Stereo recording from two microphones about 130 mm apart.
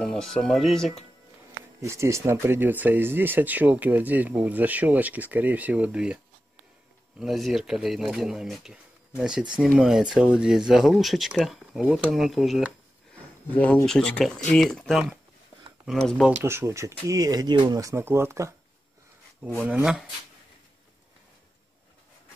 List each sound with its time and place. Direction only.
0.0 s speech: 5° left (ahead or behind)
1.8 s speech: 20° right (ahead or behind)
7.2 s speech: centre (ahead or behind)
13.8 s speech: 5° left (ahead or behind)
16.4 s speech: 20° right (ahead or behind)